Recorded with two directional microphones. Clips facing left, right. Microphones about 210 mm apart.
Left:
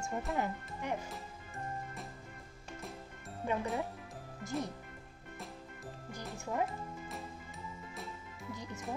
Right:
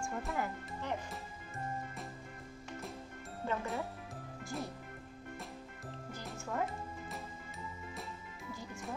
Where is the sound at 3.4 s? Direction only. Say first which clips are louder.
Left 2 dB; 15° left (ahead or behind).